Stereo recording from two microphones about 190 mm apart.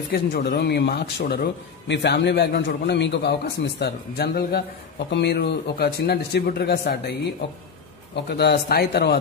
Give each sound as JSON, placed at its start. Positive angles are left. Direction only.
{"t": 0.1, "sound": "a man's voice", "side_deg": 55}
{"t": 3.8, "sound": "a man's voice", "side_deg": 55}
{"t": 8.3, "sound": "a man's voice", "side_deg": 60}